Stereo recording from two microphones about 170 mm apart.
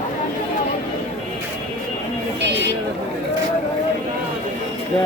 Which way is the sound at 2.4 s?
90° right.